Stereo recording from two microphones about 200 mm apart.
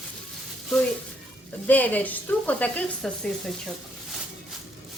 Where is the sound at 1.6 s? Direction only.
10° left (ahead or behind).